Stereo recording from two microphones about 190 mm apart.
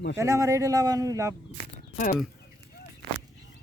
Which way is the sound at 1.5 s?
45° left (ahead or behind).